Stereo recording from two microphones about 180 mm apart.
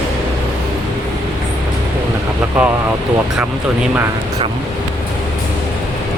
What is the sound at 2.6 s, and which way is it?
Speech, 5° right (ahead or behind).